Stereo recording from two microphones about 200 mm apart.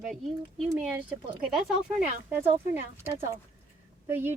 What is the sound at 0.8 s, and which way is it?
Speech, 5° right (ahead or behind).